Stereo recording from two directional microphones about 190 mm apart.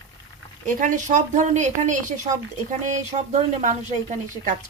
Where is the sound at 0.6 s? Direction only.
45° right (ahead or behind).